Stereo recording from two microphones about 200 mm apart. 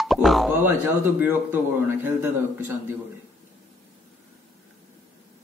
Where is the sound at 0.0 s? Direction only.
Centre (ahead or behind).